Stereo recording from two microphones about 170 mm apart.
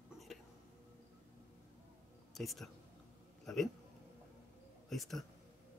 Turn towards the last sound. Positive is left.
turn(degrees=0)  # may be behind; listen again after turning